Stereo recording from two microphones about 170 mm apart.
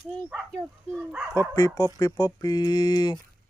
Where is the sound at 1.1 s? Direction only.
10° right (ahead or behind).